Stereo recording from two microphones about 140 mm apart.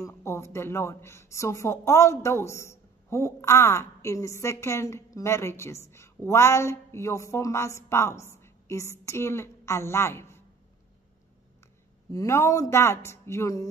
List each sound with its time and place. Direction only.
0.0 s a woman's voice: 20° left (ahead or behind)
12.1 s a woman's voice: 20° left (ahead or behind)